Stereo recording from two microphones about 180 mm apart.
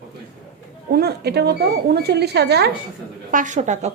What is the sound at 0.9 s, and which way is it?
Speech, 60° right (ahead or behind).